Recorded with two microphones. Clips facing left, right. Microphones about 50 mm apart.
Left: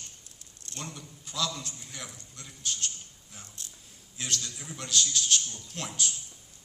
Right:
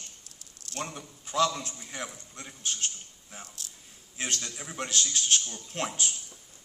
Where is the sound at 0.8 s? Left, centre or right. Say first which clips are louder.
Right 5 dB; right.